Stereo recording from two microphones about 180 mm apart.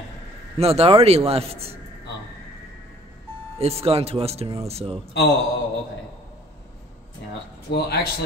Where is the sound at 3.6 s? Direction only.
35° right (ahead or behind).